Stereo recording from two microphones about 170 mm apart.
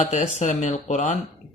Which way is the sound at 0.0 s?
45° left (ahead or behind).